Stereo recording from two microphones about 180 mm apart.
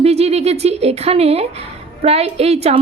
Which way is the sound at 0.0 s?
35° right (ahead or behind).